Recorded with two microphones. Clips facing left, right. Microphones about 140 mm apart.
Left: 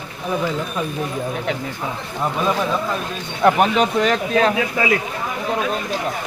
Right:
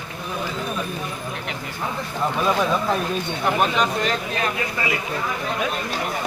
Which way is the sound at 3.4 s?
90° left.